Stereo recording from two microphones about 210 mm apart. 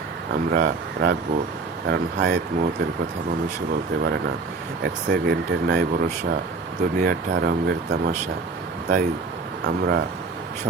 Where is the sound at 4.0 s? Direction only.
55° right (ahead or behind).